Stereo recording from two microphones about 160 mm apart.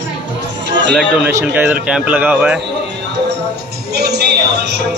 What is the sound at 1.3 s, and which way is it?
A man's voice, 10° right (ahead or behind).